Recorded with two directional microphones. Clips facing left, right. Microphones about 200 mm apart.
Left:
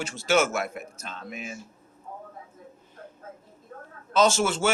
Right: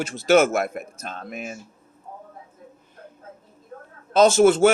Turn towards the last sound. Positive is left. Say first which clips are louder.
# right 8 dB
turn(degrees=-60)  # may be behind; listen again after turning